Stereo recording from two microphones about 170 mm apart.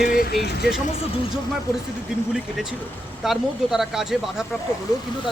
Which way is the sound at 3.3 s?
Centre (ahead or behind).